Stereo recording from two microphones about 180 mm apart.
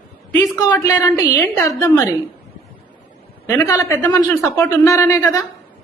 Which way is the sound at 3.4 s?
15° left (ahead or behind).